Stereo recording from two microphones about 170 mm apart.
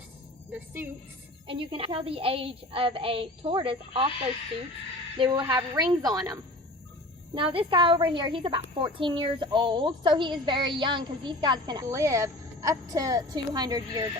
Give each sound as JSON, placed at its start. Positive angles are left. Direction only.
{"t": 1.5, "sound": "a woman's voice", "side_deg": -30}
{"t": 5.1, "sound": "a woman's voice", "side_deg": -30}
{"t": 7.3, "sound": "a woman's voice", "side_deg": -30}